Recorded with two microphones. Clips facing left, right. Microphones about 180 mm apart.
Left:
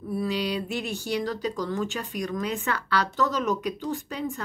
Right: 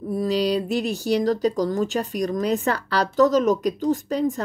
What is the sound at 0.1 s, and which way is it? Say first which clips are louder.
Speech: right 6 dB; 40° right (ahead or behind).